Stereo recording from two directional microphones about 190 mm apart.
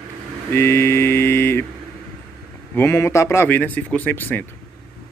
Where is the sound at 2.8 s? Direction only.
15° left (ahead or behind).